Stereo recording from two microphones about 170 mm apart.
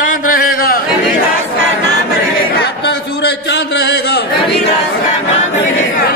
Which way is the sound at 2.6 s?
80° left.